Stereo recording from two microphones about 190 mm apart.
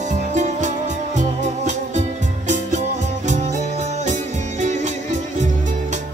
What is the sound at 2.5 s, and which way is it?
Music, 40° right (ahead or behind).